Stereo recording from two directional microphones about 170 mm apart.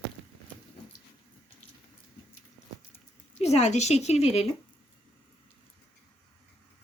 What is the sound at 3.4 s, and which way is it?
A woman's voice, 40° left (ahead or behind).